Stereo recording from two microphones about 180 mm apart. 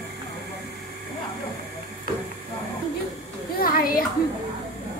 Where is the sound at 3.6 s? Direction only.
55° left (ahead or behind).